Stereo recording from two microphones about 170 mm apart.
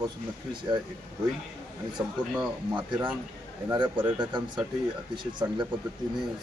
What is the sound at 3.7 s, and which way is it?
Speech, 25° right (ahead or behind).